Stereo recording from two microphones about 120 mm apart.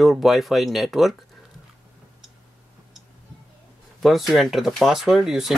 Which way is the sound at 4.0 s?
Centre (ahead or behind).